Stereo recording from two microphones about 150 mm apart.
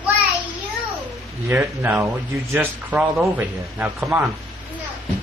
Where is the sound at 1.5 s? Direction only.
20° right (ahead or behind).